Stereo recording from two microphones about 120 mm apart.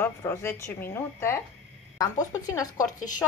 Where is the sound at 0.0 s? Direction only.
20° left (ahead or behind).